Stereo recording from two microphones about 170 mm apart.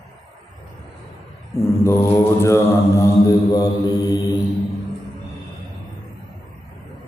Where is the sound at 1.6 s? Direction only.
15° left (ahead or behind).